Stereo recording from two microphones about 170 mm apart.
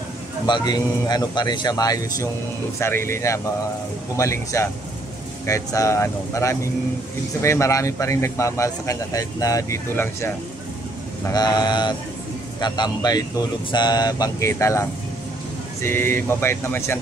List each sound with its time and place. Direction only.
0.5 s speech: 25° left (ahead or behind)